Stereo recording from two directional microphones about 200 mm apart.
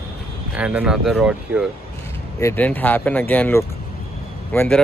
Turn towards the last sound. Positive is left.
turn(degrees=5)  # may be behind; listen again after turning